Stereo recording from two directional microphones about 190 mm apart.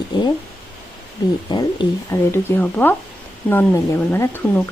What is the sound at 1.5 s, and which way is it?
Speech, 25° left (ahead or behind).